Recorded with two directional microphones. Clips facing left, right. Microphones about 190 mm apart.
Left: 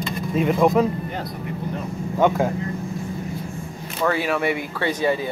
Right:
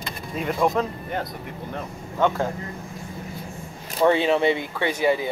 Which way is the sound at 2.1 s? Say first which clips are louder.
Left 3 dB; 10° left (ahead or behind).